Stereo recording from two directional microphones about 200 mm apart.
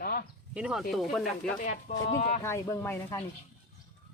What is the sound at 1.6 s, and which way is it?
Speech, 40° left (ahead or behind).